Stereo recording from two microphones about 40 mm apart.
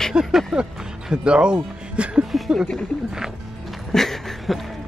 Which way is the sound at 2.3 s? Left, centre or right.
Centre.